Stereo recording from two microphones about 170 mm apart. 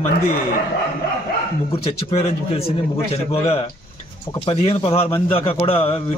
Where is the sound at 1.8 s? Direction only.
40° left (ahead or behind).